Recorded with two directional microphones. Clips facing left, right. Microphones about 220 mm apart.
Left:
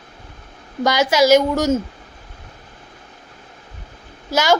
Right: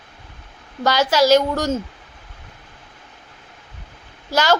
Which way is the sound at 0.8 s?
10° left (ahead or behind).